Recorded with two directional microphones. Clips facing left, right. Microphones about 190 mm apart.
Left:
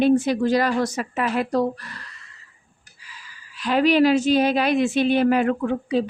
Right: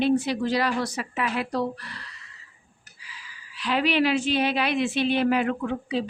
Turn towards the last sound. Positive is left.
turn(degrees=45)  # may be behind; listen again after turning